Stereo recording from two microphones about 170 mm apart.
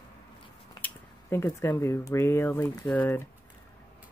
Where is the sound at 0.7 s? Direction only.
10° left (ahead or behind).